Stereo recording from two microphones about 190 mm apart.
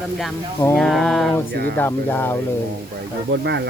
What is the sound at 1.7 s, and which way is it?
Speech, 10° left (ahead or behind).